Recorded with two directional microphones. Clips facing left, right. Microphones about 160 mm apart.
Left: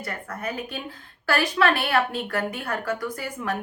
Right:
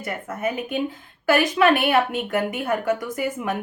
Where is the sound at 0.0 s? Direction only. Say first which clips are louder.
Right 5 dB; 20° right (ahead or behind).